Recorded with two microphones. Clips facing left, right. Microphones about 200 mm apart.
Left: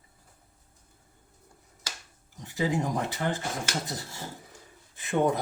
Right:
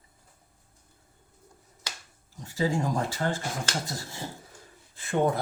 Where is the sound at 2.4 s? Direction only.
20° left (ahead or behind).